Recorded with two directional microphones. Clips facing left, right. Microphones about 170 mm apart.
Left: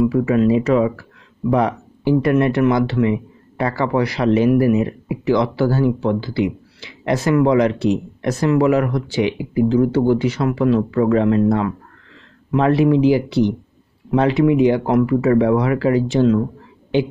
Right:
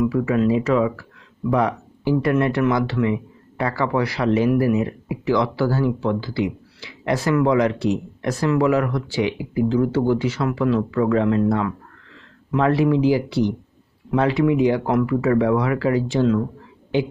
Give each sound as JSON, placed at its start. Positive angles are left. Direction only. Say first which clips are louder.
{"t": 0.0, "sound": "speech", "louder": "left 3 dB", "side_deg": 25}